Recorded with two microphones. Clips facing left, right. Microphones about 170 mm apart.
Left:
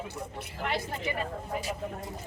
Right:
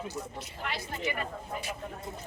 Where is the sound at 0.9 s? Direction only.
30° left (ahead or behind).